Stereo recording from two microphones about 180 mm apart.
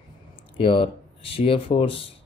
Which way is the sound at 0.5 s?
30° left (ahead or behind).